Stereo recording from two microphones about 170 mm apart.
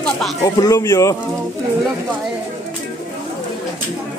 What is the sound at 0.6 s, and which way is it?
Speech, 20° left (ahead or behind).